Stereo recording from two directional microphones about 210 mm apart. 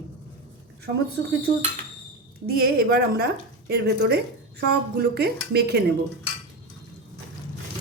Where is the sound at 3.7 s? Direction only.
50° right (ahead or behind).